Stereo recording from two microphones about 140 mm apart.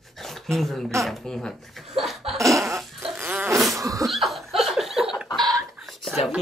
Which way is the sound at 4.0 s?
Centre (ahead or behind).